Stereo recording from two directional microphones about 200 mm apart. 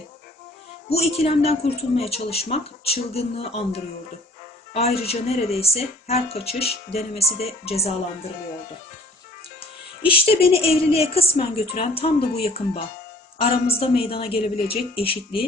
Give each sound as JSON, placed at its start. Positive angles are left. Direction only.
{"t": 0.9, "sound": "speech", "side_deg": 30}
{"t": 10.0, "sound": "a woman's voice", "side_deg": 25}